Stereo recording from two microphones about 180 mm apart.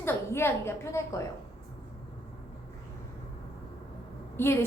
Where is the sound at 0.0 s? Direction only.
15° left (ahead or behind).